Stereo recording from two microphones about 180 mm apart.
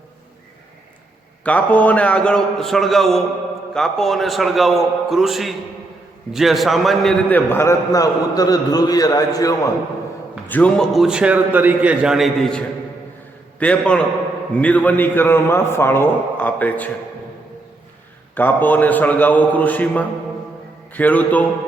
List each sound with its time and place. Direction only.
1.5 s a man's voice: 10° left (ahead or behind)
10.5 s a man's voice: 5° left (ahead or behind)
18.3 s a man's voice: 10° left (ahead or behind)